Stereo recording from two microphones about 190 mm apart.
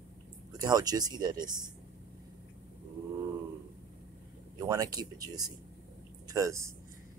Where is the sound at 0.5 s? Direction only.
20° right (ahead or behind).